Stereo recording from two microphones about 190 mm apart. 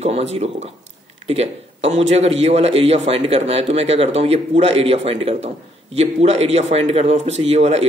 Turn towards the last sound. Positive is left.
turn(degrees=-35)  # may be behind; listen again after turning